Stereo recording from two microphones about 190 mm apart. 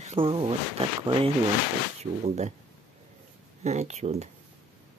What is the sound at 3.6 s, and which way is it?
Speech, 35° right (ahead or behind).